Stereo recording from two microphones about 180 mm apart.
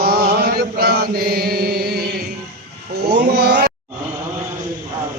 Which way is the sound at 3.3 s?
65° right (ahead or behind).